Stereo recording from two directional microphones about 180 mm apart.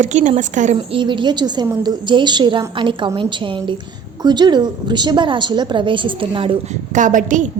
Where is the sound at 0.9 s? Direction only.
25° right (ahead or behind).